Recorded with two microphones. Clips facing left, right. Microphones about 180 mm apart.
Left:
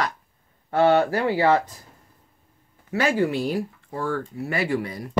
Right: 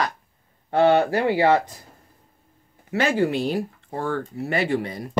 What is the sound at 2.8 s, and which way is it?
Speech, 25° right (ahead or behind).